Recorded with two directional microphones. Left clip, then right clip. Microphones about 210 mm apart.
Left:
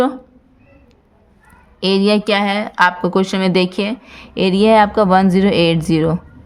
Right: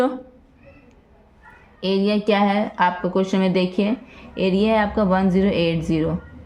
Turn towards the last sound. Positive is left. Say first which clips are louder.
# left 6 dB
turn(degrees=40)  # may be behind; listen again after turning